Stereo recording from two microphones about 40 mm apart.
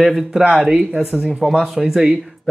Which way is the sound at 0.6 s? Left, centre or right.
Right.